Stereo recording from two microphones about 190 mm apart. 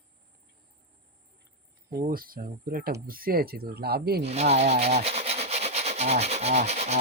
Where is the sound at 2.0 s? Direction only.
50° right (ahead or behind).